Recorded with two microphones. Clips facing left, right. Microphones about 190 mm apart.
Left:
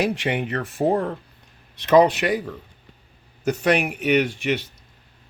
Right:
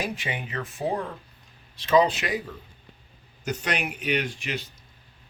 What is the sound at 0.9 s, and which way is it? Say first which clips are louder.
Speech: left 7 dB; 45° left (ahead or behind).